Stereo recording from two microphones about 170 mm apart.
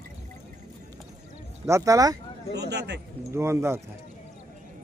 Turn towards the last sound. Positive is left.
turn(degrees=-15)  # may be behind; listen again after turning